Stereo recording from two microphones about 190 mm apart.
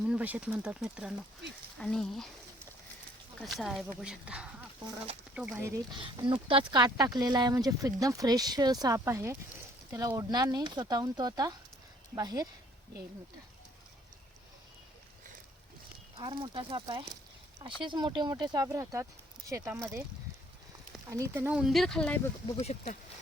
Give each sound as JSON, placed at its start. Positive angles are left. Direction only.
{"t": 0.0, "sound": "speech", "side_deg": -5}
{"t": 3.4, "sound": "speech", "side_deg": 0}
{"t": 16.1, "sound": "speech", "side_deg": -25}
{"t": 21.1, "sound": "speech", "side_deg": -15}
{"t": 22.6, "sound": "speech", "side_deg": 40}